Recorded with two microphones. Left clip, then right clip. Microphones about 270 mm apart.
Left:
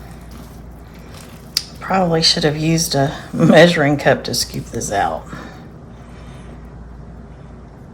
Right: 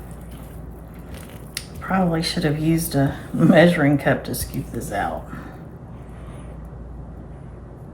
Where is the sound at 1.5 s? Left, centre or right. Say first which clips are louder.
Left 6 dB; left.